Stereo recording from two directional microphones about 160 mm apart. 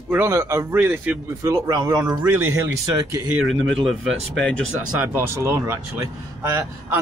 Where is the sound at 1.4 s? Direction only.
20° right (ahead or behind).